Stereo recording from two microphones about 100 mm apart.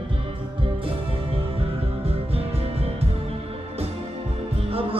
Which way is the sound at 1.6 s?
80° right.